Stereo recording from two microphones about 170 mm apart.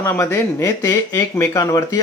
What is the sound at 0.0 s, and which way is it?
Speech, 15° left (ahead or behind).